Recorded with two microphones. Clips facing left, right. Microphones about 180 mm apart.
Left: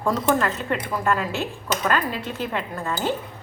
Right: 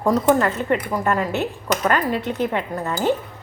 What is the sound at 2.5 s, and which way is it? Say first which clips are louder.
Speech: right 3 dB; 20° right (ahead or behind).